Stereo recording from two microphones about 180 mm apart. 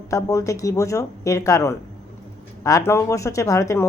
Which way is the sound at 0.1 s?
15° left (ahead or behind).